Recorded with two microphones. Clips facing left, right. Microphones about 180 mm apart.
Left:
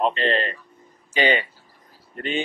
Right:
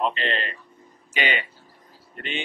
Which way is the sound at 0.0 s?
35° left (ahead or behind).